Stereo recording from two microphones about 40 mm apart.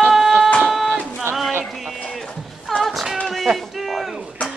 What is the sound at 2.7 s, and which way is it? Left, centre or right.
Music, centre.